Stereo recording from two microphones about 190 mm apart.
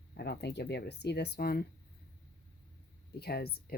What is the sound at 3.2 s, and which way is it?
Speech, 55° left (ahead or behind).